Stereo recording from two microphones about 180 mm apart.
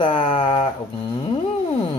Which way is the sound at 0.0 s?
30° left (ahead or behind).